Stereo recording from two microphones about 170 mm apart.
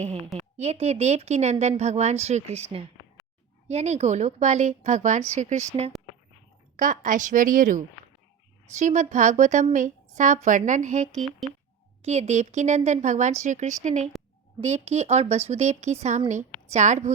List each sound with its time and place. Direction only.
0.3 s speech: 40° right (ahead or behind)
3.7 s speech: 40° right (ahead or behind)
11.1 s speech: centre (ahead or behind)
12.0 s speech: 40° right (ahead or behind)